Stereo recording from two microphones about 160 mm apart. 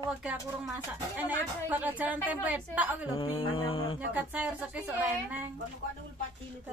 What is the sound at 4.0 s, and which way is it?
A woman's voice, 10° right (ahead or behind).